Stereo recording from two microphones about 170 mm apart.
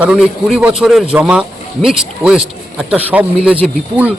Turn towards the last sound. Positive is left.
turn(degrees=-5)  # may be behind; listen again after turning